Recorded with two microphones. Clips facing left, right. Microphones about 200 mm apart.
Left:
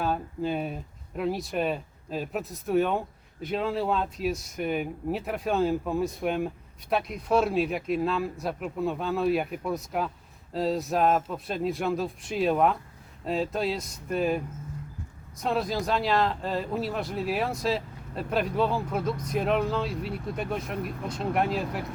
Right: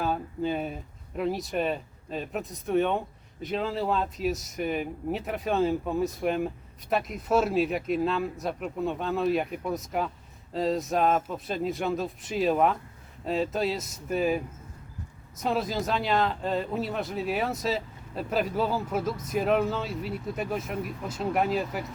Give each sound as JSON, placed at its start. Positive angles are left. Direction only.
{"t": 0.0, "sound": "speech", "side_deg": 0}